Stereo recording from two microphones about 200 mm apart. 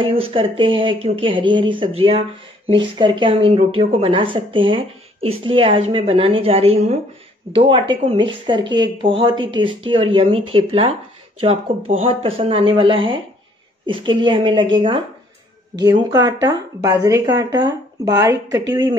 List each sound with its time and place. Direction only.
0.0 s speech: 25° right (ahead or behind)
15.8 s speech: 20° right (ahead or behind)